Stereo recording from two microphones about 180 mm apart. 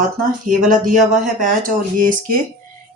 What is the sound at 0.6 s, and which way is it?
Speech, 50° right (ahead or behind).